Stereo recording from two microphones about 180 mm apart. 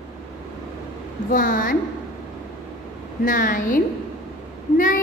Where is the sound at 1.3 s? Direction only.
50° left (ahead or behind).